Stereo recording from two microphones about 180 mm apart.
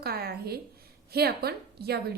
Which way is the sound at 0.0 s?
60° right (ahead or behind).